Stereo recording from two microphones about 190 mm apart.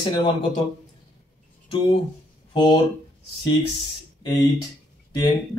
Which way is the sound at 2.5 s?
25° left (ahead or behind).